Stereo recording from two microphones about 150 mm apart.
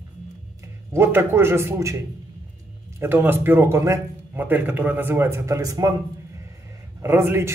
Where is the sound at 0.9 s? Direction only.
15° right (ahead or behind).